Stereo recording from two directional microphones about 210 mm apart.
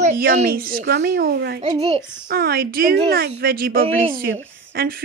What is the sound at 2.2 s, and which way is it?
A child's voice, 50° right (ahead or behind).